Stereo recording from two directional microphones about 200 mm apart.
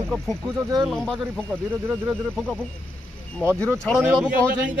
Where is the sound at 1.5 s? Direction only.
10° right (ahead or behind).